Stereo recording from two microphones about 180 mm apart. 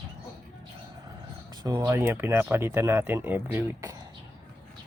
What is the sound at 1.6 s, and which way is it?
Speech, 20° right (ahead or behind).